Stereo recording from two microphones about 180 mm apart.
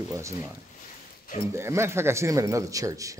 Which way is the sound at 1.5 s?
15° right (ahead or behind).